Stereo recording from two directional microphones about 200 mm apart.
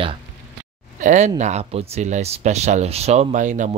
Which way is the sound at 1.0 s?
35° right (ahead or behind).